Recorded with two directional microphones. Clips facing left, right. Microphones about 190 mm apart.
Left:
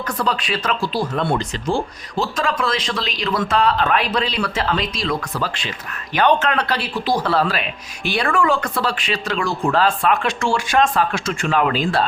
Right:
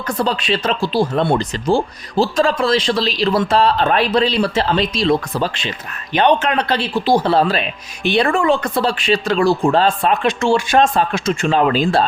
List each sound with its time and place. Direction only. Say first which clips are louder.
0.1 s speech: right 5 dB; 25° right (ahead or behind)